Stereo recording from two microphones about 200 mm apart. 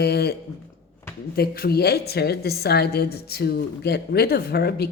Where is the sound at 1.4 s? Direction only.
50° left (ahead or behind).